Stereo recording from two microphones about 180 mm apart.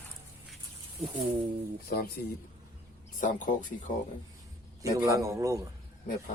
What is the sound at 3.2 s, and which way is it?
Speech, 45° left (ahead or behind).